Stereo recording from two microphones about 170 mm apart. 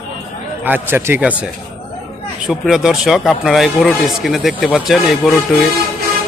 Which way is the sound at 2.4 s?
Centre (ahead or behind).